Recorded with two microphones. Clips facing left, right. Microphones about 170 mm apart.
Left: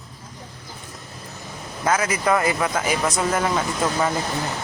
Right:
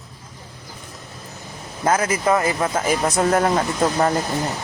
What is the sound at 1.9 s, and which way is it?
Speech, 50° right (ahead or behind).